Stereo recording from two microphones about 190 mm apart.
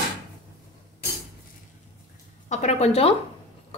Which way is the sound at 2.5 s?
35° left (ahead or behind).